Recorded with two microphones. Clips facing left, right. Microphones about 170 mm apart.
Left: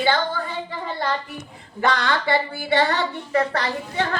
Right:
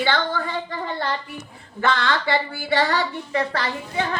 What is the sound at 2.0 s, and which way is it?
A woman's voice, 25° left (ahead or behind).